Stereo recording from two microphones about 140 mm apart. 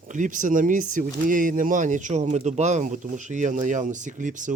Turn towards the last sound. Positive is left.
turn(degrees=-65)  # may be behind; listen again after turning